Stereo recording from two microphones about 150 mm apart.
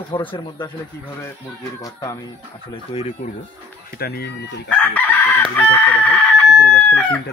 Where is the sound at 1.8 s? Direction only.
25° left (ahead or behind).